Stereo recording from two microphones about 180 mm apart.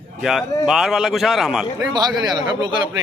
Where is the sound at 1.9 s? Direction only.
20° right (ahead or behind).